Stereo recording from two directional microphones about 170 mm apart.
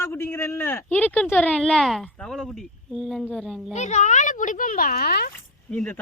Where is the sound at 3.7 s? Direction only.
45° left (ahead or behind); by 5.3 s 65° left (ahead or behind).